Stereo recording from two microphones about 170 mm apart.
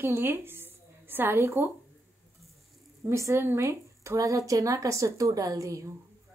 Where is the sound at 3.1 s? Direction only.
15° right (ahead or behind).